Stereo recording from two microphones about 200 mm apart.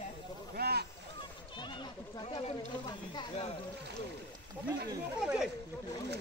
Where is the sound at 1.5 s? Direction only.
25° left (ahead or behind).